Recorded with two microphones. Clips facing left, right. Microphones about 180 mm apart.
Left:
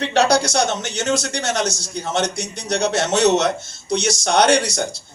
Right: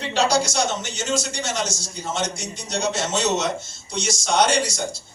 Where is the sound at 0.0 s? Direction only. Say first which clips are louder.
Left 4 dB; 65° left (ahead or behind).